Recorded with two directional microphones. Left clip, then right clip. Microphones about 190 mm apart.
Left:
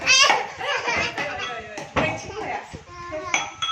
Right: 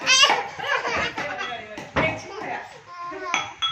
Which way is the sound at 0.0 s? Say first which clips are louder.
Even; centre (ahead or behind).